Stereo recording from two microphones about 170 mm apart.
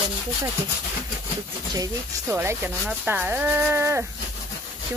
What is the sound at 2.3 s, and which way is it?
Speech, 15° right (ahead or behind).